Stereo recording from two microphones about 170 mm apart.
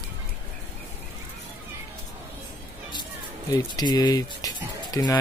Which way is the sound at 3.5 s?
20° left (ahead or behind).